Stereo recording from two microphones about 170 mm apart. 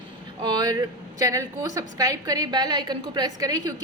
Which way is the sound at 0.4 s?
25° right (ahead or behind).